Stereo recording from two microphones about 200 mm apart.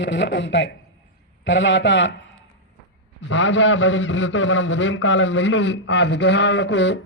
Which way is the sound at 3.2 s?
65° left (ahead or behind).